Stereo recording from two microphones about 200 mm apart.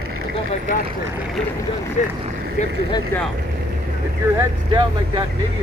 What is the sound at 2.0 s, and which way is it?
Speech, 35° left (ahead or behind).